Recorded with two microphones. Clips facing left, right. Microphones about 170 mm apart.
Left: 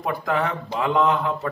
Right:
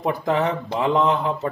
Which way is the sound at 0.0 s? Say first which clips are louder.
Right 3 dB; 25° right (ahead or behind).